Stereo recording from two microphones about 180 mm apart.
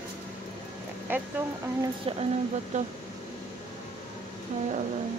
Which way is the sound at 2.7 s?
40° right (ahead or behind).